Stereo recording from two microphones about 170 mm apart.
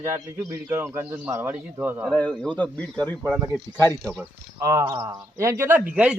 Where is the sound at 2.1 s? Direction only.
5° left (ahead or behind).